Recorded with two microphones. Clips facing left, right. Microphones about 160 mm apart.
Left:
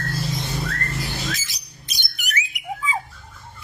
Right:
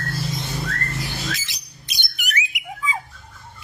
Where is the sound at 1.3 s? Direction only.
45° left (ahead or behind).